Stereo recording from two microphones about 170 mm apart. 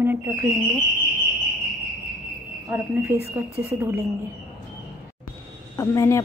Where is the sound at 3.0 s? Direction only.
15° right (ahead or behind).